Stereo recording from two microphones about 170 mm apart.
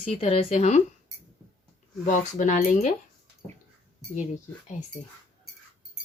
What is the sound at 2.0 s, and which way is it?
Speech, 50° left (ahead or behind).